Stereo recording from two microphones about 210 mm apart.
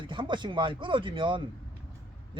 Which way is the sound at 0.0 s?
20° right (ahead or behind).